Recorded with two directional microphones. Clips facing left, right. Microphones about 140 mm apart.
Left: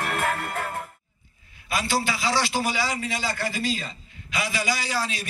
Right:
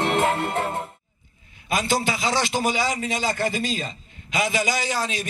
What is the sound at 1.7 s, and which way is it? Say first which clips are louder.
A man's voice: right 3 dB; 20° right (ahead or behind).